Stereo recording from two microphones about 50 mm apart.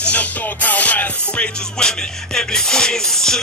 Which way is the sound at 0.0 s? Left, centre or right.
Left.